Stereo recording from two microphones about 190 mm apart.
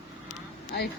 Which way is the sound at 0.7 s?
60° left (ahead or behind).